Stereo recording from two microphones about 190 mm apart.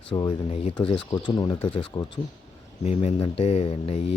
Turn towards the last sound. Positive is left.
turn(degrees=30)  # may be behind; listen again after turning